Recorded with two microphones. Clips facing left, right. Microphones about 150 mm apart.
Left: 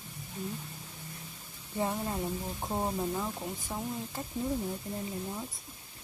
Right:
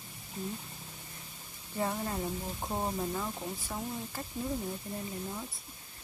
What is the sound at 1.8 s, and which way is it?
Speech, 10° left (ahead or behind).